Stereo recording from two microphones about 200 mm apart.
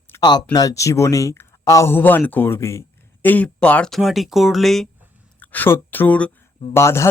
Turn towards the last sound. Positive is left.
turn(degrees=15)  # may be behind; listen again after turning